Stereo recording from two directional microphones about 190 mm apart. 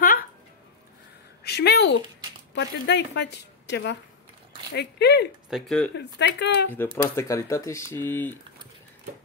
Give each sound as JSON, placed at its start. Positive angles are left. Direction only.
{"t": 1.4, "sound": "a sound", "side_deg": 60}
{"t": 2.5, "sound": "a woman's voice", "side_deg": 65}
{"t": 5.5, "sound": "speech", "side_deg": 0}
{"t": 5.9, "sound": "a woman's voice", "side_deg": 65}
{"t": 6.7, "sound": "speech", "side_deg": 10}